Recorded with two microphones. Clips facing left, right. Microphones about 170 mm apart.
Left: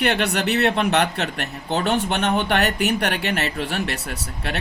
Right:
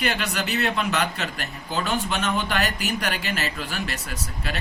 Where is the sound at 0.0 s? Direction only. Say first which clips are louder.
Left 6 dB; 65° left (ahead or behind).